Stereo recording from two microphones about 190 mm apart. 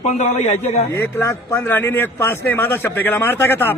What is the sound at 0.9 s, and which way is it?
Speech, 10° left (ahead or behind).